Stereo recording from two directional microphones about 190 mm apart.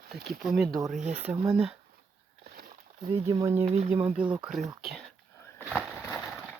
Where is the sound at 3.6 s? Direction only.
30° right (ahead or behind).